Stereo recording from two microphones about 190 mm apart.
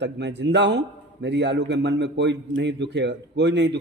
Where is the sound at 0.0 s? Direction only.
65° right (ahead or behind).